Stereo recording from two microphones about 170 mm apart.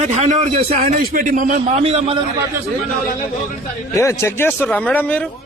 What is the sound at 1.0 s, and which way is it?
Speech, 55° right (ahead or behind).